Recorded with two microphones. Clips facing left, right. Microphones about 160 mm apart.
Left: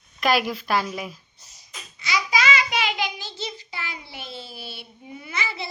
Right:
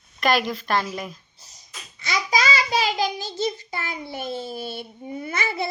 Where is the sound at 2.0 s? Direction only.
50° right (ahead or behind).